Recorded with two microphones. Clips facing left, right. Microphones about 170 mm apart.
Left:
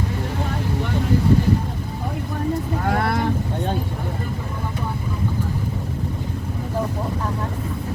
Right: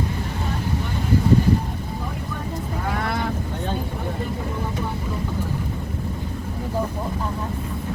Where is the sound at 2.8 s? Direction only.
55° left (ahead or behind).